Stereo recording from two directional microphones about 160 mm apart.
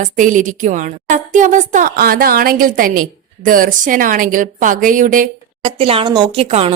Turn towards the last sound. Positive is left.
turn(degrees=-40)  # may be behind; listen again after turning